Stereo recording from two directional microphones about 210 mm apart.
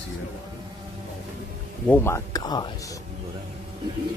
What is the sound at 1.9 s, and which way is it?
Speech, 10° left (ahead or behind).